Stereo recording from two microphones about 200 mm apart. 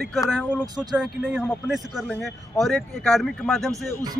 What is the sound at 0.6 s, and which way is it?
Speech, 20° right (ahead or behind).